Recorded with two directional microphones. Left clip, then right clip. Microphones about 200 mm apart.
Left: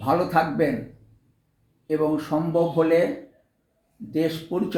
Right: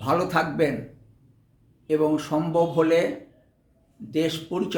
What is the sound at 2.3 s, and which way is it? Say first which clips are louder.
Speech: even; 20° right (ahead or behind).